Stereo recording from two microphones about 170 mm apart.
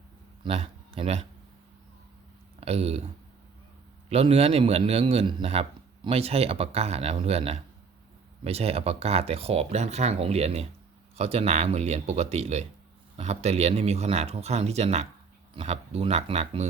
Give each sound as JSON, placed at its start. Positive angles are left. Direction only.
{"t": 0.4, "sound": "speech", "side_deg": -35}
{"t": 2.6, "sound": "speech", "side_deg": -35}
{"t": 4.1, "sound": "speech", "side_deg": -35}